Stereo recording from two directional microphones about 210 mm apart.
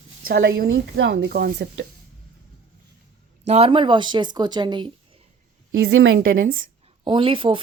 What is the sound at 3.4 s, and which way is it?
Speech, 30° right (ahead or behind).